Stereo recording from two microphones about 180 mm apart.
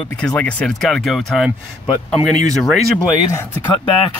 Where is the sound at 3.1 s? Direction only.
15° left (ahead or behind).